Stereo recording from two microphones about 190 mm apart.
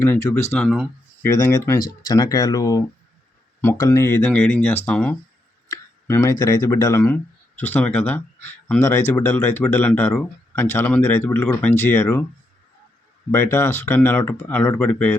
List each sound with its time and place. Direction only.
0.0 s speech: 15° left (ahead or behind)
0.5 s speech: centre (ahead or behind)
1.2 s speech: 15° left (ahead or behind)
5.6 s tick: 15° left (ahead or behind)
6.4 s speech: 15° left (ahead or behind)
13.3 s speech: 15° left (ahead or behind)